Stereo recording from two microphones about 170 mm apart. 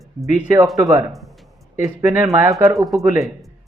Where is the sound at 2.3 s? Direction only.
15° right (ahead or behind).